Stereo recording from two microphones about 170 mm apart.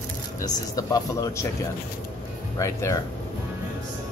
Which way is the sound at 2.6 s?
15° left (ahead or behind).